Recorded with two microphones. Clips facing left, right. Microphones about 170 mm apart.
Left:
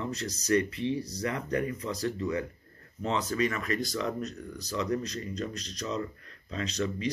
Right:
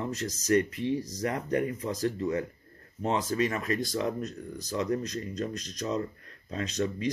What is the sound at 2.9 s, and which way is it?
Speech, 45° right (ahead or behind).